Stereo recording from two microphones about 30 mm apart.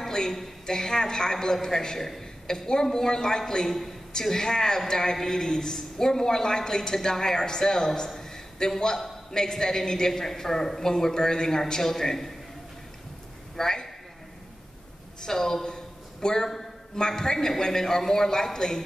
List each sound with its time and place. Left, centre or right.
0.7 s a woman's voice: left
2.4 s a woman's voice: left
8.2 s a sound: centre
8.9 s a man's voice: centre
13.6 s a man's voice: centre
15.2 s a man's voice: centre